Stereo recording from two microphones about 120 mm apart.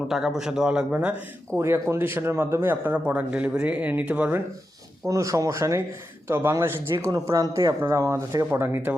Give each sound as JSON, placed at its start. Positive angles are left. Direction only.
{"t": 0.1, "sound": "a man's voice", "side_deg": -5}
{"t": 5.0, "sound": "speech", "side_deg": -25}